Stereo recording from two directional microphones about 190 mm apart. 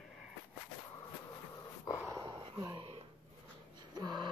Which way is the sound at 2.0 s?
20° right (ahead or behind).